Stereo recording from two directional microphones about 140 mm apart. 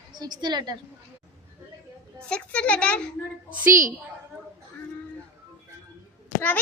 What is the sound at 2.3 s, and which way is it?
Speech, 10° left (ahead or behind).